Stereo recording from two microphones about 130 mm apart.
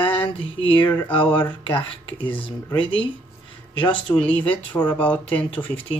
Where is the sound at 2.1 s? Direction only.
15° left (ahead or behind).